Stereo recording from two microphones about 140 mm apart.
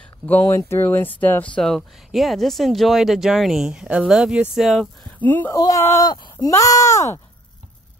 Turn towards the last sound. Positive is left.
turn(degrees=20)  # may be behind; listen again after turning